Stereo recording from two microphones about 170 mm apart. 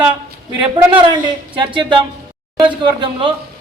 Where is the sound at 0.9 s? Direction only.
25° right (ahead or behind).